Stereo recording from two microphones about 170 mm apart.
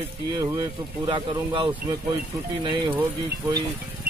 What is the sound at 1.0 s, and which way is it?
Speech, 30° right (ahead or behind).